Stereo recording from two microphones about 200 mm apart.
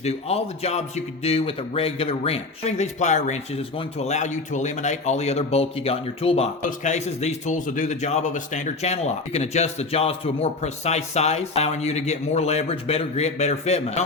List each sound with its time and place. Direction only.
0.0 s speech: 30° left (ahead or behind)